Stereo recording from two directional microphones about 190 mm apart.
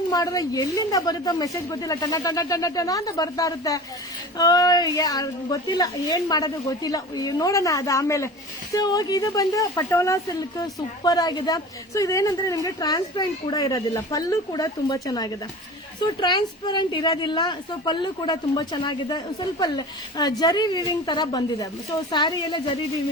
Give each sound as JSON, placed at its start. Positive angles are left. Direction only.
{"t": 0.1, "sound": "a woman's voice", "side_deg": 20}